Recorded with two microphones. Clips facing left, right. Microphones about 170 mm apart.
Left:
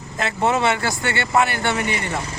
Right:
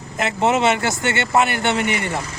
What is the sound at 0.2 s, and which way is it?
Speech, 20° right (ahead or behind).